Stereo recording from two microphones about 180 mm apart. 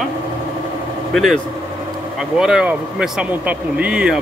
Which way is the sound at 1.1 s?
Centre (ahead or behind).